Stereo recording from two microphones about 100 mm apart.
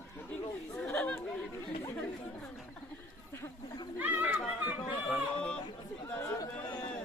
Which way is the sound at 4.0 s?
15° right (ahead or behind).